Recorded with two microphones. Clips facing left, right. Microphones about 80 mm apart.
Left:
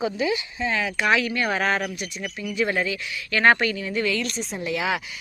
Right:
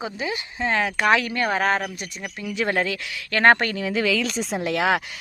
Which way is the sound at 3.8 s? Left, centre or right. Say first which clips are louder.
Right 2 dB; right.